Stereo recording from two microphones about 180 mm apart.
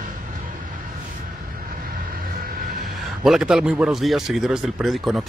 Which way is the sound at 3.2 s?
Centre (ahead or behind).